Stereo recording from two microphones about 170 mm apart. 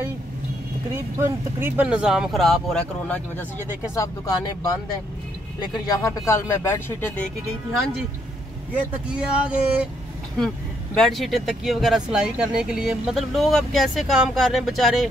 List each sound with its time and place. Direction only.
0.9 s speech: 15° right (ahead or behind); by 3.4 s 5° left (ahead or behind)
3.9 s speech: 20° left (ahead or behind)
9.1 s speech: 5° right (ahead or behind)
11.0 s speech: centre (ahead or behind)